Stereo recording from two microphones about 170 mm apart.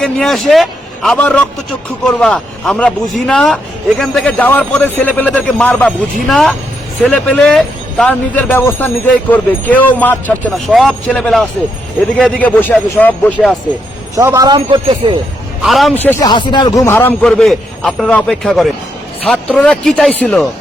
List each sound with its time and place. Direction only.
0.0 s a man's voice: centre (ahead or behind)
14.2 s speech: 20° right (ahead or behind)
15.6 s a man's voice: centre (ahead or behind)
16.2 s a man's voice: 25° left (ahead or behind); by 20.5 s 5° left (ahead or behind)